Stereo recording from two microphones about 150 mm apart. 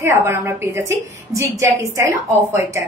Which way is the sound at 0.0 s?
20° right (ahead or behind).